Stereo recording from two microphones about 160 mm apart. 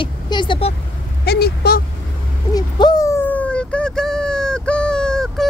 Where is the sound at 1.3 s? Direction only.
85° left.